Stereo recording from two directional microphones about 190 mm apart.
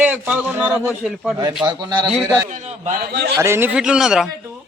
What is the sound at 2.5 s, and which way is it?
Speech, 40° right (ahead or behind).